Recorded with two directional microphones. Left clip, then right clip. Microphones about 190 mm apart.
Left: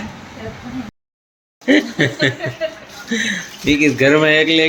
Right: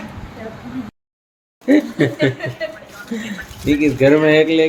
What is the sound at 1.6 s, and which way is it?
Speech, centre (ahead or behind).